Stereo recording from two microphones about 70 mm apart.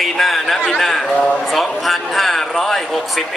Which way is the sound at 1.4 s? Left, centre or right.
Centre.